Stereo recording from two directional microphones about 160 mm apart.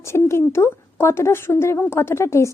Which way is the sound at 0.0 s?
15° left (ahead or behind).